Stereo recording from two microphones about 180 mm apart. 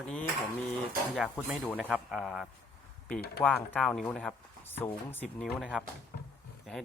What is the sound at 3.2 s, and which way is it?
Speech, 65° left (ahead or behind).